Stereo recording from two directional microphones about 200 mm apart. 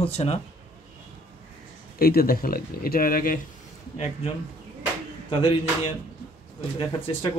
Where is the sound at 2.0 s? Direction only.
50° left (ahead or behind).